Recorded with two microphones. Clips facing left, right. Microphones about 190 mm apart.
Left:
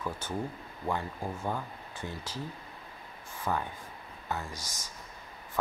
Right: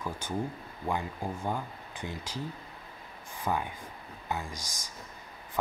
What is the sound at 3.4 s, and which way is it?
Speech, 15° right (ahead or behind).